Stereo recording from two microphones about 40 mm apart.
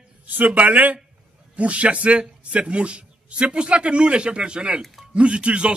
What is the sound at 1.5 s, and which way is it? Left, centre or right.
A man's voice, right.